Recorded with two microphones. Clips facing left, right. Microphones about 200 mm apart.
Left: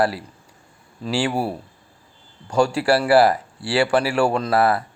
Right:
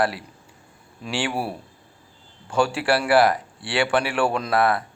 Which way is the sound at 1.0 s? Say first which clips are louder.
Left 4 dB; 25° left (ahead or behind).